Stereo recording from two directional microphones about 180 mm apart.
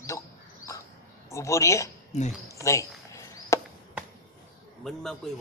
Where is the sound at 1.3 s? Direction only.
15° left (ahead or behind).